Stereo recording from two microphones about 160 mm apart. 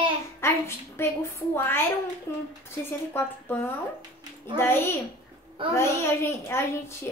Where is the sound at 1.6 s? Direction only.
15° left (ahead or behind).